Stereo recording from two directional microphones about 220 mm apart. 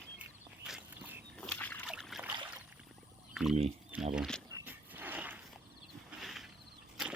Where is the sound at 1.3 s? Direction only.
5° left (ahead or behind).